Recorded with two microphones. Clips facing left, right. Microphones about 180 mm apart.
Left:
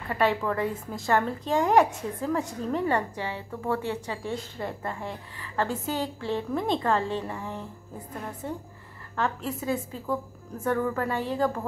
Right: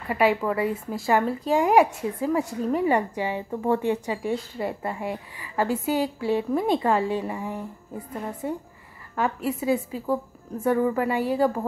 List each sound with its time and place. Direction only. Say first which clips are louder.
0.1 s a woman's voice: right 3 dB; 10° right (ahead or behind)